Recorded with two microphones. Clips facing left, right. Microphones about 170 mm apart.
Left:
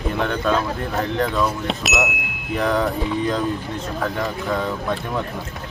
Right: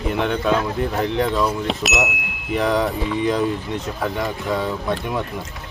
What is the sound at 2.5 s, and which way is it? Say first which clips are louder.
Speech: right 1 dB; 15° right (ahead or behind).